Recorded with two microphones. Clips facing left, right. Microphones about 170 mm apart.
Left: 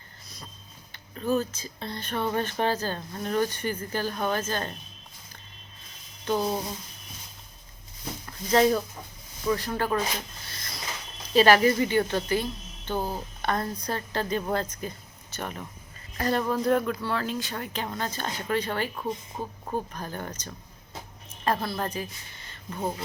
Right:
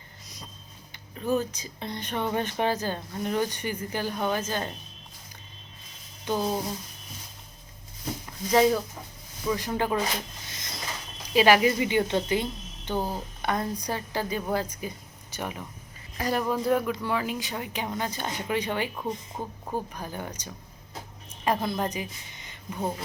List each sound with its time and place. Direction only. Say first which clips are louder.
1.2 s speech: even; 15° right (ahead or behind)
6.3 s speech: left 1 dB; 15° right (ahead or behind)
8.3 s speech: even; 10° right (ahead or behind)
10.5 s mechanisms: right 1 dB; 20° right (ahead or behind)
11.3 s speech: left 1 dB; 10° right (ahead or behind)